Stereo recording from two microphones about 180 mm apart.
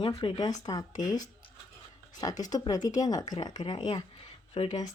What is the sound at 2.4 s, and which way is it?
Speech, 20° left (ahead or behind).